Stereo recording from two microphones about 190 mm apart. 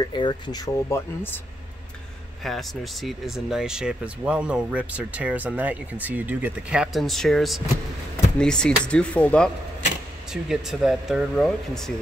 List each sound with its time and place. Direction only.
0.0 s speech: 25° left (ahead or behind)
2.4 s speech: centre (ahead or behind)